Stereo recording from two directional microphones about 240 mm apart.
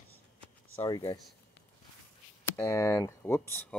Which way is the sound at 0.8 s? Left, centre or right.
Centre.